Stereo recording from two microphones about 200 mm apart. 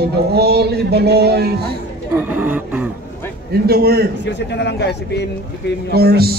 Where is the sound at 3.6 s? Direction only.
50° right (ahead or behind).